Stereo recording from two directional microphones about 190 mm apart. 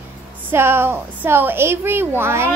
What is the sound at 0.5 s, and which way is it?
Speech, 10° right (ahead or behind).